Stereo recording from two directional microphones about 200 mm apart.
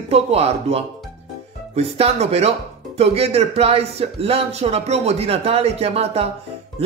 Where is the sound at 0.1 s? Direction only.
30° right (ahead or behind).